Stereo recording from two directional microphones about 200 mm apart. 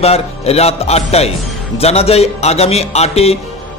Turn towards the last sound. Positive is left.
turn(degrees=30)  # may be behind; listen again after turning